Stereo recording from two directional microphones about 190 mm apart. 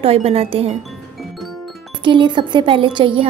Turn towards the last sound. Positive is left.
turn(degrees=-25)  # may be behind; listen again after turning